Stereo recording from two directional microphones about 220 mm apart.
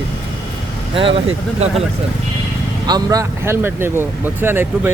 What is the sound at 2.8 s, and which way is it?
Speech, 15° right (ahead or behind).